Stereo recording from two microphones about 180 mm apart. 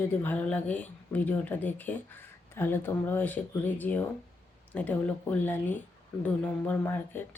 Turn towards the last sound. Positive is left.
turn(degrees=10)  # may be behind; listen again after turning